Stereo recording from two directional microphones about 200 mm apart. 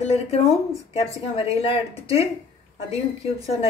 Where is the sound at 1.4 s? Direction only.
30° left (ahead or behind).